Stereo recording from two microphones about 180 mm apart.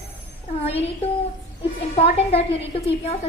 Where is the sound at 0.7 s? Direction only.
35° left (ahead or behind).